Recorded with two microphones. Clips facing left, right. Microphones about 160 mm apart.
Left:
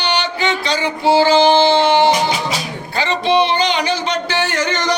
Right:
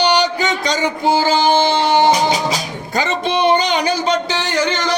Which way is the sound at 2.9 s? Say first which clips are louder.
Left 2 dB; 45° right (ahead or behind).